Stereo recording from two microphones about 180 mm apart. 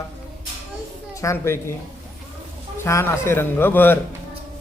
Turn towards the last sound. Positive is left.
turn(degrees=10)  # may be behind; listen again after turning